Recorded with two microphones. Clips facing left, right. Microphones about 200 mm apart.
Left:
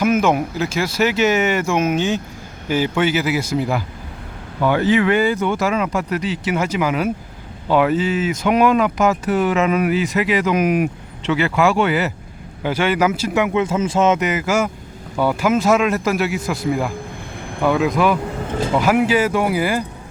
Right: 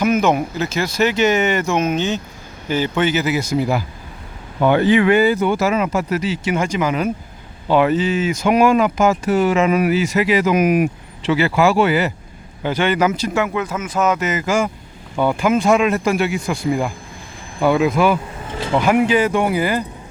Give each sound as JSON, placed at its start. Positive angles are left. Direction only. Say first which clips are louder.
{"t": 0.0, "sound": "speech", "louder": "even", "side_deg": 5}
{"t": 4.9, "sound": "speech", "louder": "right 2 dB", "side_deg": -15}
{"t": 14.3, "sound": "speech", "louder": "even", "side_deg": 10}